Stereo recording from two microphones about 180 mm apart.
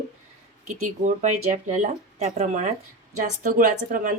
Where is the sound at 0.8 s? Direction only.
40° right (ahead or behind).